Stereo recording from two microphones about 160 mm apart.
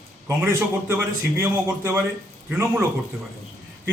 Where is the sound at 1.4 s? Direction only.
15° right (ahead or behind).